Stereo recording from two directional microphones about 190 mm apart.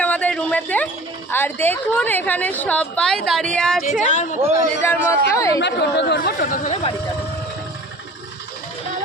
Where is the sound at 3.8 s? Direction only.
40° left (ahead or behind).